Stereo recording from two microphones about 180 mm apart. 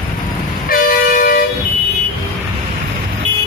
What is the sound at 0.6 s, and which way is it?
Vehicle, 50° left (ahead or behind).